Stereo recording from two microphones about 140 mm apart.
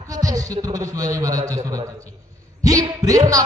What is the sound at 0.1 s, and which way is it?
A man's voice, 25° right (ahead or behind).